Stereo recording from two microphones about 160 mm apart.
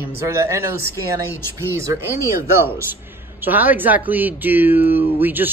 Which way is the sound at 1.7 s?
20° right (ahead or behind).